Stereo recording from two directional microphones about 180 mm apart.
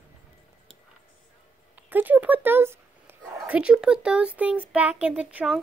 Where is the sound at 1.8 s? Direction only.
10° right (ahead or behind).